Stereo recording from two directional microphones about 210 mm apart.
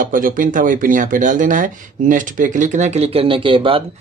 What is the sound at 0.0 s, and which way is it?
Speech, 40° right (ahead or behind).